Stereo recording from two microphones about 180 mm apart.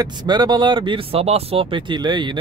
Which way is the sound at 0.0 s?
25° right (ahead or behind).